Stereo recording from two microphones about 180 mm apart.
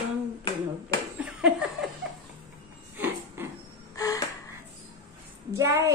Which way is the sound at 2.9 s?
10° right (ahead or behind).